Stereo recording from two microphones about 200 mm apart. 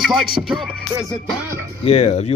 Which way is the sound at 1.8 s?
30° left (ahead or behind).